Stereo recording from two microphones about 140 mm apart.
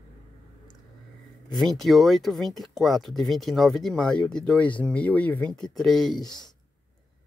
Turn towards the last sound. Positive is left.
turn(degrees=30)  # may be behind; listen again after turning